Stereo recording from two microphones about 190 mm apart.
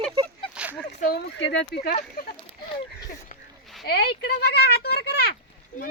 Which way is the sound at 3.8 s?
55° left (ahead or behind).